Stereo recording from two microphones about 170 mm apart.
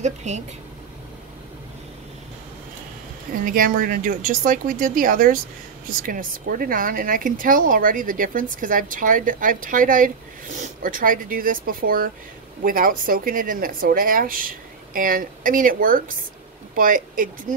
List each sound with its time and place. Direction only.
0.0 s speech: 45° right (ahead or behind)
3.4 s speech: 55° right (ahead or behind)